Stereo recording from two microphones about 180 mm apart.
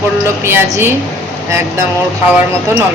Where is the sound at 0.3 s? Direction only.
15° right (ahead or behind).